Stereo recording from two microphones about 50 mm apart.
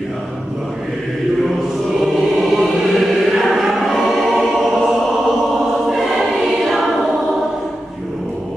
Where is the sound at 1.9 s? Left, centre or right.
Centre.